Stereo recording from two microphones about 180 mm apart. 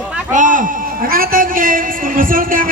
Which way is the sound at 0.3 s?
45° right (ahead or behind).